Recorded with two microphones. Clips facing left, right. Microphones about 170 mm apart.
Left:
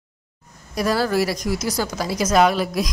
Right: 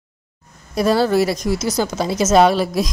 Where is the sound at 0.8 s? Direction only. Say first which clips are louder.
Right 4 dB; 25° right (ahead or behind).